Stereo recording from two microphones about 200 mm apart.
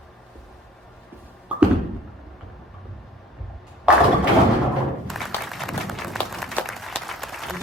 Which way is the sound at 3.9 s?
5° right (ahead or behind).